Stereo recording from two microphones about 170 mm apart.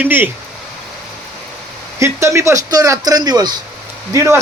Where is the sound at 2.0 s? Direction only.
15° right (ahead or behind).